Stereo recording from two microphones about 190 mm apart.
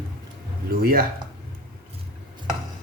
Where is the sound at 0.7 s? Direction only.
55° right (ahead or behind).